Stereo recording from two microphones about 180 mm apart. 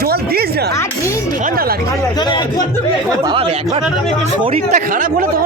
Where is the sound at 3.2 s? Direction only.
30° right (ahead or behind).